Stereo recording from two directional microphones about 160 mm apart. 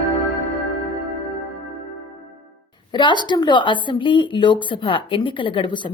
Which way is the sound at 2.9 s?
30° left (ahead or behind).